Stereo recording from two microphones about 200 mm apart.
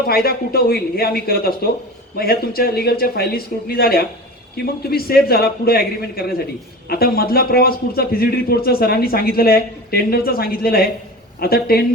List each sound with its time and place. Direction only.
0.1 s a man's voice: 50° left (ahead or behind)